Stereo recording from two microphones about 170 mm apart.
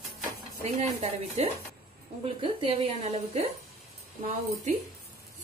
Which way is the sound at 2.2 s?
30° right (ahead or behind).